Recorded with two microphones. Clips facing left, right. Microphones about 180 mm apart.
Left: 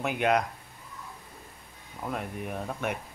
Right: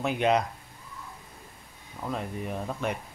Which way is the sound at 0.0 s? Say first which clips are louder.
Right 1 dB; 5° left (ahead or behind).